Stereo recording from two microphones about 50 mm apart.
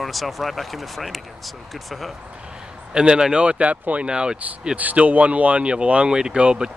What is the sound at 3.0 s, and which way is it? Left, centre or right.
Speech, centre.